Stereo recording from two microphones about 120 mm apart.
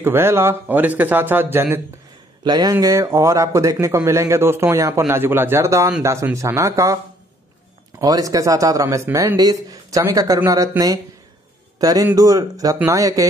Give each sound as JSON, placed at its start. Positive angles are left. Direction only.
{"t": 0.0, "sound": "a man's voice", "side_deg": -20}
{"t": 2.4, "sound": "speech", "side_deg": -35}
{"t": 8.0, "sound": "speech", "side_deg": -30}
{"t": 11.8, "sound": "speech", "side_deg": -30}